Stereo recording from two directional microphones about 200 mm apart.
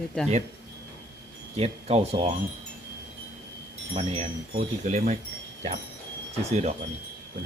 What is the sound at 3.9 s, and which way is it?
Speech, 30° right (ahead or behind).